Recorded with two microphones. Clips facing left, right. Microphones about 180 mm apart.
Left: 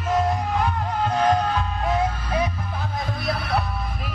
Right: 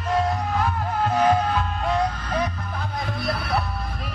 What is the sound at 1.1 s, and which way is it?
Music, 5° right (ahead or behind).